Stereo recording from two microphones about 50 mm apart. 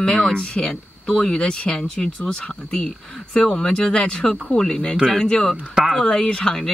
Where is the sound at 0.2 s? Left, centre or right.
Centre.